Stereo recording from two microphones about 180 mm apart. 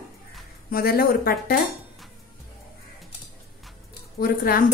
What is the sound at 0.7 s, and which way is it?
Speech, 55° left (ahead or behind).